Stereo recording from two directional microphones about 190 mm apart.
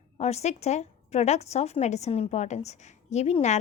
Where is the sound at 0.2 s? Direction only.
35° left (ahead or behind).